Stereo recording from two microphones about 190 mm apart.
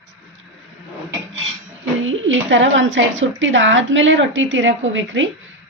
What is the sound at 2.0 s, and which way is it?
A woman's voice, 90° right.